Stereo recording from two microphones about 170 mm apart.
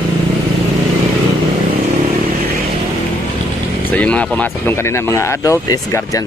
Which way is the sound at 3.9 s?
5° left (ahead or behind).